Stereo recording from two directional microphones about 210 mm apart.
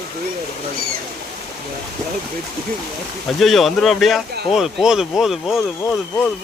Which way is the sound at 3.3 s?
Centre (ahead or behind).